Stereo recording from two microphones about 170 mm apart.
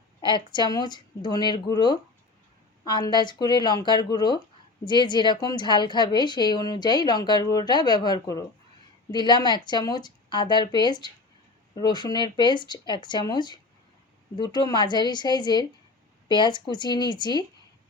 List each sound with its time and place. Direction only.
0.3 s a woman's voice: 25° left (ahead or behind)